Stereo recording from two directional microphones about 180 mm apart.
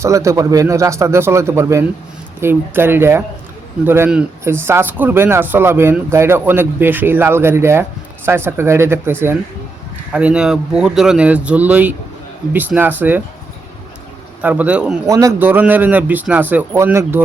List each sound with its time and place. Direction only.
0.0 s speech: 15° right (ahead or behind)
14.4 s speech: 10° right (ahead or behind)
15.0 s speech: 20° right (ahead or behind)